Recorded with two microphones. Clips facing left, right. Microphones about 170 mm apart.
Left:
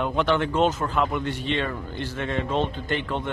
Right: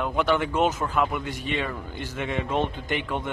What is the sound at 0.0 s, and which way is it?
A man's voice, 5° right (ahead or behind).